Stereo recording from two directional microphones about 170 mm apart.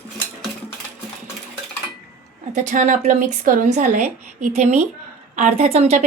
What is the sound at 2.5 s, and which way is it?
A woman's voice, 50° right (ahead or behind).